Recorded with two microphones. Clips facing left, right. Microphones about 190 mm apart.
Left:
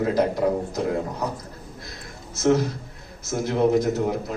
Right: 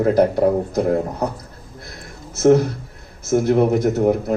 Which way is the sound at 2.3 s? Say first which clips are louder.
Right 6 dB; 55° right (ahead or behind).